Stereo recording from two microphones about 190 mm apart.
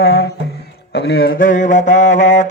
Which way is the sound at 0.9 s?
60° left (ahead or behind).